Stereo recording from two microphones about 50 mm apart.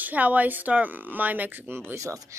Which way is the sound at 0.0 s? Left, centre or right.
Right.